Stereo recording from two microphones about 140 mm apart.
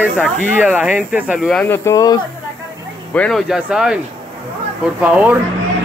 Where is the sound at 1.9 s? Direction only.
25° left (ahead or behind).